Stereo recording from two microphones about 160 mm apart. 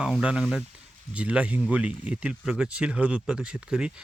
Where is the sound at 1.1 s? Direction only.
5° right (ahead or behind).